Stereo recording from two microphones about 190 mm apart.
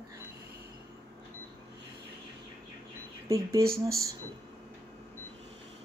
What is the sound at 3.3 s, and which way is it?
Speech, 15° right (ahead or behind).